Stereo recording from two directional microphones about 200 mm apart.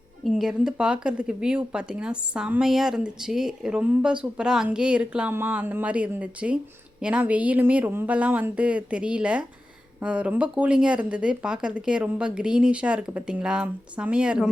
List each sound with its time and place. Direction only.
0.3 s a woman's voice: centre (ahead or behind)